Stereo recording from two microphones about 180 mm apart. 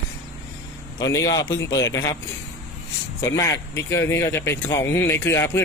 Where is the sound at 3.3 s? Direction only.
20° left (ahead or behind).